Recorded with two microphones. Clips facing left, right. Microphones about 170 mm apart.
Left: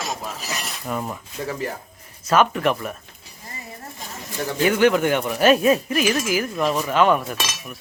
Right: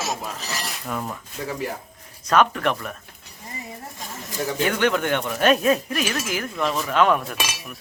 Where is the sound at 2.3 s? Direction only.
5° left (ahead or behind).